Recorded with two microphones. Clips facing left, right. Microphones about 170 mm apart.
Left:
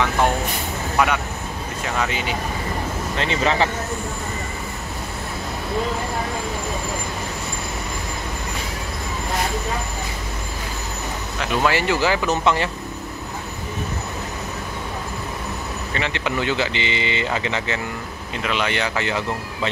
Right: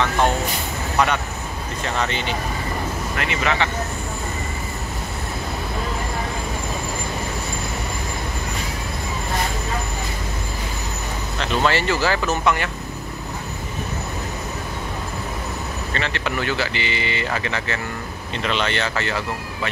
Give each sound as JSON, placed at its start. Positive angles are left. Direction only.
{"t": 0.9, "sound": "speech", "side_deg": 5}
{"t": 3.2, "sound": "speech", "side_deg": 30}
{"t": 11.3, "sound": "speech", "side_deg": 10}
{"t": 15.9, "sound": "speech", "side_deg": 15}